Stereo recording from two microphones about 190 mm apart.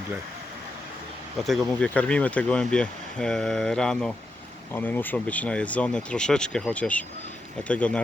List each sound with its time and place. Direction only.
1.5 s speech: 5° left (ahead or behind)